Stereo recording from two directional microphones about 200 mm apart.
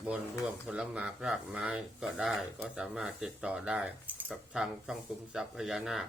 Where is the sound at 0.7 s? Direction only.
5° right (ahead or behind).